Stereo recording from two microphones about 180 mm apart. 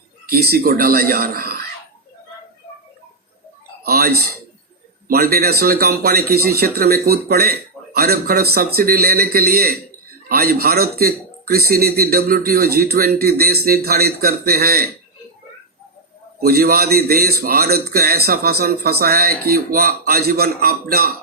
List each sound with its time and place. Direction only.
0.3 s a man's voice: 60° right (ahead or behind)
3.8 s a sound: 60° right (ahead or behind)
5.0 s a man's voice: 55° right (ahead or behind)
16.4 s a man's voice: 55° right (ahead or behind)